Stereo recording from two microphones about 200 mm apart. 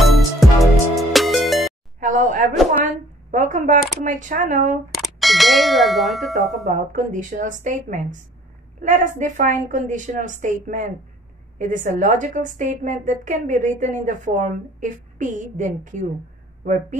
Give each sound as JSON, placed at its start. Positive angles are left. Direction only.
{"t": 0.0, "sound": "music", "side_deg": 0}
{"t": 2.0, "sound": "a sound", "side_deg": -40}
{"t": 2.8, "sound": "a woman's voice", "side_deg": -40}
{"t": 4.9, "sound": "bell", "side_deg": 0}
{"t": 6.7, "sound": "a woman's voice", "side_deg": -40}